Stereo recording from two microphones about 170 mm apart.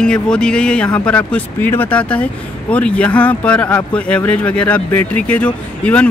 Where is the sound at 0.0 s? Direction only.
5° left (ahead or behind).